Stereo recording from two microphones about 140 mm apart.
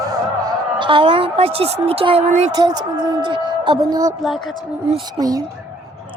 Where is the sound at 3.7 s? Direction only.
25° right (ahead or behind).